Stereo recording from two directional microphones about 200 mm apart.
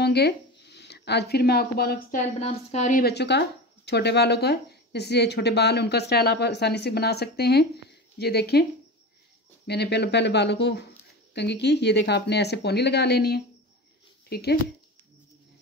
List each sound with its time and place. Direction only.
0.0 s speech: 55° left (ahead or behind); by 3.0 s 35° left (ahead or behind)
3.0 s speech: 55° left (ahead or behind)
9.7 s speech: 55° left (ahead or behind)